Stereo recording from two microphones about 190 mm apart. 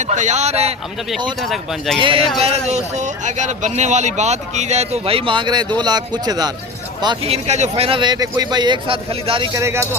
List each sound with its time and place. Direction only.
0.1 s speech: 40° right (ahead or behind)
1.4 s speech: centre (ahead or behind)
2.0 s speech: 25° right (ahead or behind)
7.4 s speech: 35° right (ahead or behind)
9.6 s speech: 15° right (ahead or behind)